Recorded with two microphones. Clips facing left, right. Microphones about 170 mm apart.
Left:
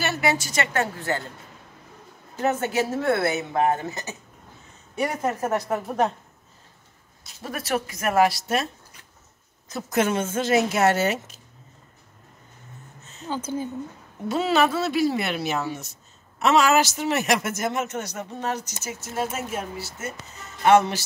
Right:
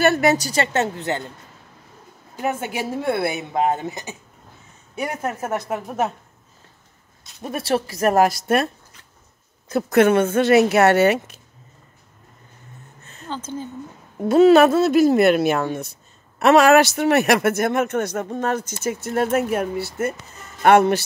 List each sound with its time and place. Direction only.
0.0 s a woman's voice: 50° right (ahead or behind); by 1.2 s 20° right (ahead or behind)
2.3 s speech: 10° right (ahead or behind)
7.4 s a woman's voice: 25° right (ahead or behind); by 8.6 s 50° right (ahead or behind)
9.7 s speech: 60° right (ahead or behind)
13.3 s speech: 10° left (ahead or behind)
14.3 s speech: 50° right (ahead or behind)